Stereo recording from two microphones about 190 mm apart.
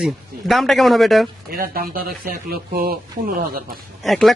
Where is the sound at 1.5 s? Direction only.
50° right (ahead or behind).